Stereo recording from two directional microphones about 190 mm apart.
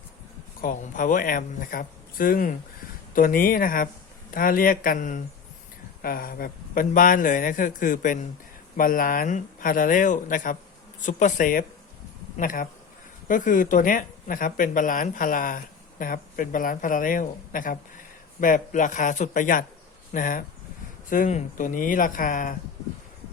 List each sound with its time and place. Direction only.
0.6 s speech: 45° left (ahead or behind)